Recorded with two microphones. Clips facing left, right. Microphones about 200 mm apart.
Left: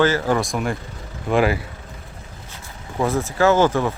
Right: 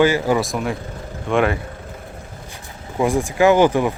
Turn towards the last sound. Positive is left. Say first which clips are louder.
# right 3 dB
turn(degrees=-15)  # may be behind; listen again after turning